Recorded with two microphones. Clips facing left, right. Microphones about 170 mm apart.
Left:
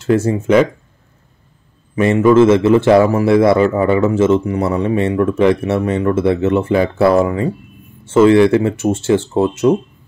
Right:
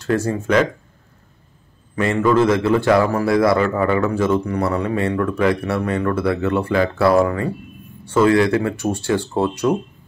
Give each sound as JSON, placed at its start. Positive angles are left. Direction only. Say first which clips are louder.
{"t": 0.0, "sound": "a man's voice", "louder": "left 5 dB", "side_deg": 25}
{"t": 2.0, "sound": "a man's voice", "louder": "left 6 dB", "side_deg": 20}